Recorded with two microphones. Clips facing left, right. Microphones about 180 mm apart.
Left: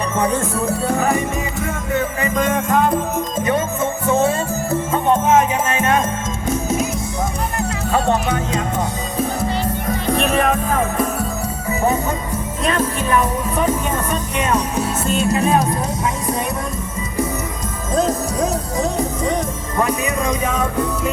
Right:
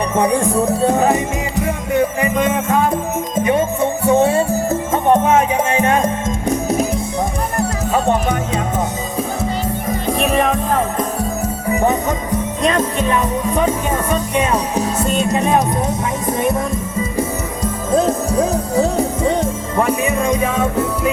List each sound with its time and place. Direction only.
0.2 s speech: 15° right (ahead or behind)
2.2 s music: 10° right (ahead or behind)
4.0 s music: 35° right (ahead or behind)
5.7 s music: 15° right (ahead or behind)
10.1 s music: centre (ahead or behind)
15.3 s music: 20° right (ahead or behind)
17.9 s music: 30° right (ahead or behind)